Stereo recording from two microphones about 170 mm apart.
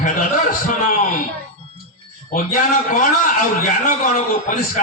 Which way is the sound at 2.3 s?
50° left (ahead or behind).